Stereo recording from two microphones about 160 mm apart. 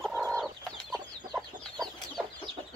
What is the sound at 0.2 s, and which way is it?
Chicken, 5° left (ahead or behind).